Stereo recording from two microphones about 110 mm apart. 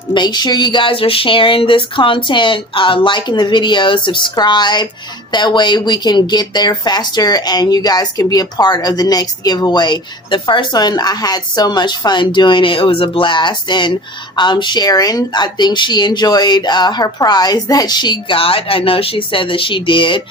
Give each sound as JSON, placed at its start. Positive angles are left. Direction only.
{"t": 0.1, "sound": "speech", "side_deg": 40}